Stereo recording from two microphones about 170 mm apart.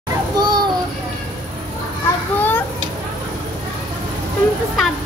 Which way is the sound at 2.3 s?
10° left (ahead or behind).